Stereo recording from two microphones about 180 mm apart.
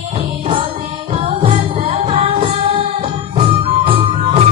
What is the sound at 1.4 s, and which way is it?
Music, 35° right (ahead or behind).